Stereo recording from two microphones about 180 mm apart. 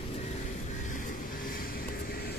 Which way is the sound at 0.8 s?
45° left (ahead or behind).